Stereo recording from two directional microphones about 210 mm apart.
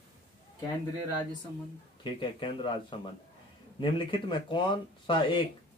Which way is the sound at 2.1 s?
25° left (ahead or behind).